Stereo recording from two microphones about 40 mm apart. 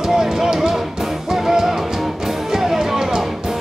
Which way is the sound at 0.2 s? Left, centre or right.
Centre.